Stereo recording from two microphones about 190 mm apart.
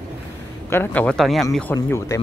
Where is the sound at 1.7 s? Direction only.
15° left (ahead or behind).